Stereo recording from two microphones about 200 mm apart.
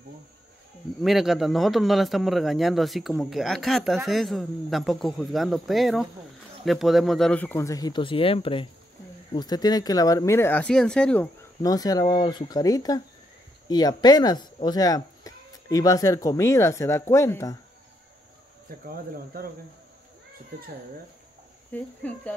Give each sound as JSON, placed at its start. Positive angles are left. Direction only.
{"t": 1.0, "sound": "a man's voice", "side_deg": 0}
{"t": 11.6, "sound": "speech", "side_deg": 20}
{"t": 18.7, "sound": "speech", "side_deg": -45}
{"t": 21.7, "sound": "speech", "side_deg": 10}